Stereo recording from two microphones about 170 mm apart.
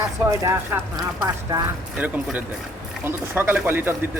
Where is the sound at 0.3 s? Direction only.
15° right (ahead or behind).